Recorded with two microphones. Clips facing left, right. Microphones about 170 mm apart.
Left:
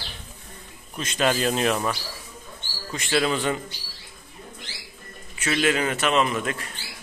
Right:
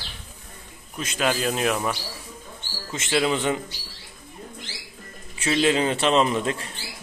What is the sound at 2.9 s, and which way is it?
Speech, 20° right (ahead or behind).